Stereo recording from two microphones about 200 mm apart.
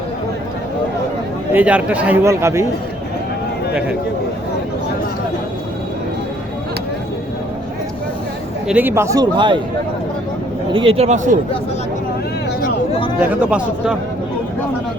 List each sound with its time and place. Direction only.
1.5 s a man's voice: 5° right (ahead or behind)
8.6 s a man's voice: 10° right (ahead or behind)
10.7 s speech: 25° right (ahead or behind)
13.3 s speech: 5° right (ahead or behind)